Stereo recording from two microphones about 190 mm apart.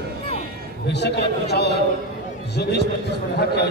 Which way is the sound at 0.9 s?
60° left (ahead or behind).